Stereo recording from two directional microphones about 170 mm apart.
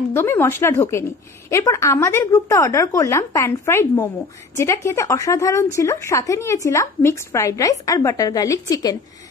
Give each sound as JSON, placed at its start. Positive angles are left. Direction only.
{"t": 0.1, "sound": "speech", "side_deg": 15}